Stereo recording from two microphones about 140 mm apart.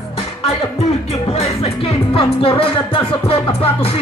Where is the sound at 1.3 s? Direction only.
45° left (ahead or behind).